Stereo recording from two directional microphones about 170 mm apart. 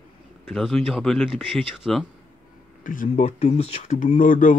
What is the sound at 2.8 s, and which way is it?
Speech, 50° left (ahead or behind).